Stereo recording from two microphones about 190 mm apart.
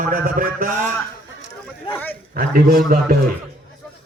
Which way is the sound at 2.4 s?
55° right (ahead or behind).